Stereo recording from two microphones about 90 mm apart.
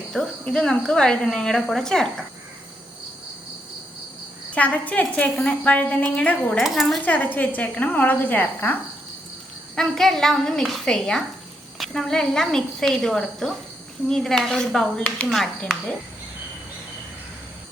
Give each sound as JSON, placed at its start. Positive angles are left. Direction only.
{"t": 0.1, "sound": "speech", "side_deg": 5}
{"t": 4.5, "sound": "speech", "side_deg": 15}
{"t": 6.6, "sound": "speech", "side_deg": 0}
{"t": 7.0, "sound": "a woman's voice", "side_deg": 20}
{"t": 9.7, "sound": "speech", "side_deg": 5}